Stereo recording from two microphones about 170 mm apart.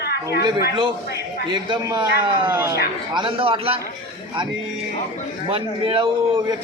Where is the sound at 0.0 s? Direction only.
70° left (ahead or behind).